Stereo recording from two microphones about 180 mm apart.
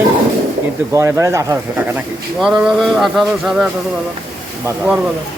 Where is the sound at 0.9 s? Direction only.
15° right (ahead or behind).